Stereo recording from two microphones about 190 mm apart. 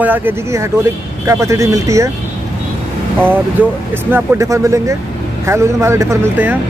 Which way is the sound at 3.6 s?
10° right (ahead or behind).